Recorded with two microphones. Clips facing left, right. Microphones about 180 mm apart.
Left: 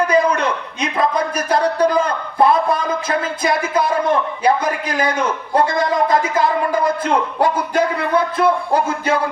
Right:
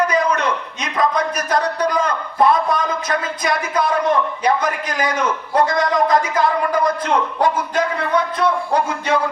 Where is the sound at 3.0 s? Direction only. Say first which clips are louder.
Left 2 dB; 30° left (ahead or behind).